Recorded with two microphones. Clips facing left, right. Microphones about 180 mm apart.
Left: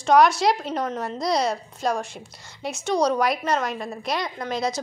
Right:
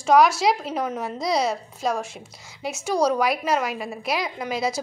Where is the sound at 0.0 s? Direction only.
5° right (ahead or behind).